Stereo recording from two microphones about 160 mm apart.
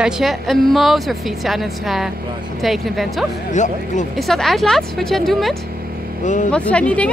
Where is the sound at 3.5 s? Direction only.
50° left (ahead or behind).